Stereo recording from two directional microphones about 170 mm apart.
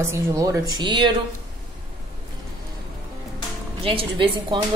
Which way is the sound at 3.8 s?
30° right (ahead or behind).